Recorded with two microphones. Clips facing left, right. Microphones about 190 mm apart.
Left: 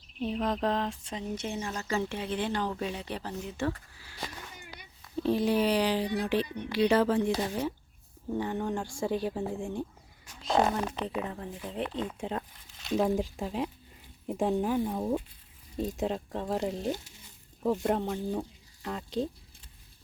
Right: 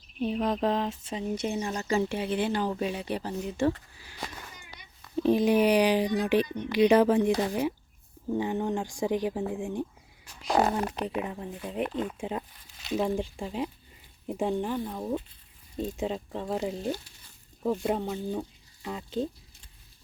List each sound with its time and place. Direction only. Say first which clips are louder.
0.2 s speech: right 3 dB; centre (ahead or behind)
3.6 s speech: right 6 dB; 25° right (ahead or behind)
5.1 s speech: right 4 dB; 15° right (ahead or behind)
11.2 s speech: right 2 dB; 15° right (ahead or behind); by 15.2 s 10° left (ahead or behind)
15.8 s speech: even; centre (ahead or behind)